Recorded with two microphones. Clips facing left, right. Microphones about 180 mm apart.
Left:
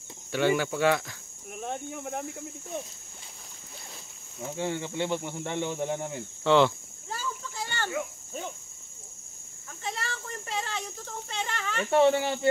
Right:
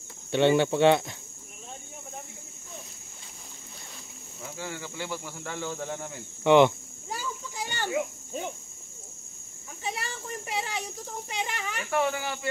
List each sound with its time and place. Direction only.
0.3 s speech: 25° right (ahead or behind)
1.6 s cricket: 70° left (ahead or behind)
4.5 s speech: 25° left (ahead or behind)
6.4 s cricket: 15° right (ahead or behind)
9.8 s speech: 15° right (ahead or behind)
11.9 s speech: 30° left (ahead or behind)